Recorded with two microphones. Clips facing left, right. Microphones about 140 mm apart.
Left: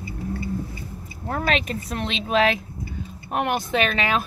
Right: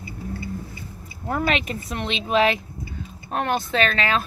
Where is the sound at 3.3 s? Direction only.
15° left (ahead or behind).